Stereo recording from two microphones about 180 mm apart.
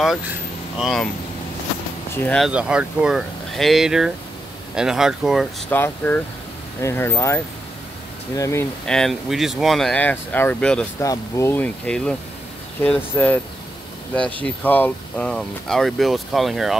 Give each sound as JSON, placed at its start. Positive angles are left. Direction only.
{"t": 0.7, "sound": "speech", "side_deg": 0}
{"t": 2.1, "sound": "speech", "side_deg": 5}
{"t": 5.7, "sound": "speech", "side_deg": 10}
{"t": 8.8, "sound": "speech", "side_deg": 5}
{"t": 11.0, "sound": "speech", "side_deg": 15}
{"t": 14.4, "sound": "speech", "side_deg": 10}